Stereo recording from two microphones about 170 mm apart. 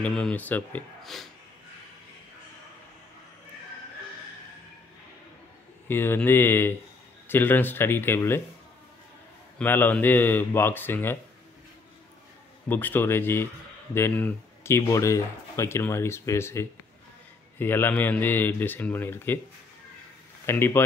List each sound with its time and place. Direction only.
0.0 s speech: 5° left (ahead or behind)
5.9 s speech: 15° left (ahead or behind)
9.6 s speech: 10° left (ahead or behind)
12.6 s speech: 10° left (ahead or behind)
20.4 s speech: 15° left (ahead or behind)